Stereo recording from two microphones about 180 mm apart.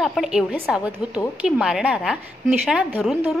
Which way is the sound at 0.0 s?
Centre (ahead or behind).